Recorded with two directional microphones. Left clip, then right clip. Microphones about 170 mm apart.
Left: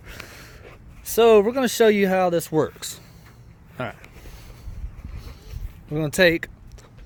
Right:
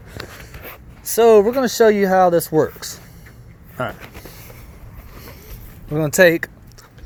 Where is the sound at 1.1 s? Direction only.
25° left (ahead or behind).